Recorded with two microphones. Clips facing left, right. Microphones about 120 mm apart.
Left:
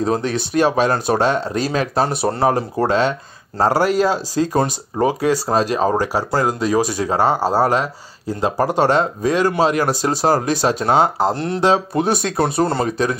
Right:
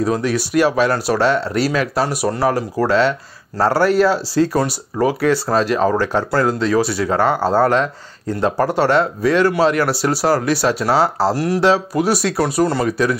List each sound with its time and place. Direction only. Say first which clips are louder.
0.0 s speech: right 1 dB; 30° left (ahead or behind)